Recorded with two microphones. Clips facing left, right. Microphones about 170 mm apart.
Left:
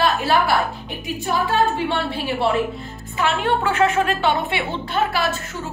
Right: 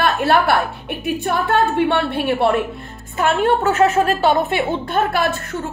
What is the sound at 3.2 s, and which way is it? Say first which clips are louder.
A woman's voice: right 4 dB; 45° right (ahead or behind).